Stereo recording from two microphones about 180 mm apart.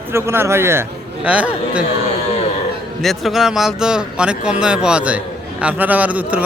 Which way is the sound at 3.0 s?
Centre (ahead or behind).